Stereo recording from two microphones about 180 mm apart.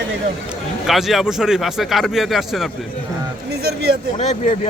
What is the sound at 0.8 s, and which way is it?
Speech, centre (ahead or behind).